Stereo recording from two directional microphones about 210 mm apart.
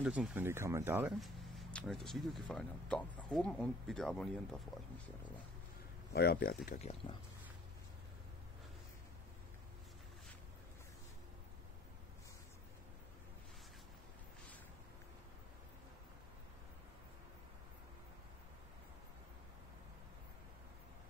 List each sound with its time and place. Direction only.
0.0 s speech: 5° right (ahead or behind)
6.1 s speech: 45° left (ahead or behind)
6.8 s speech: 30° left (ahead or behind)